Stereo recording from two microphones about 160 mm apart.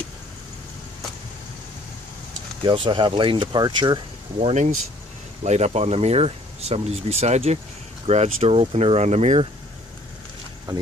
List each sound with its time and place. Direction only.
2.6 s speech: 30° right (ahead or behind)